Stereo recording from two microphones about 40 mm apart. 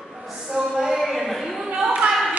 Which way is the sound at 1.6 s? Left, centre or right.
Right.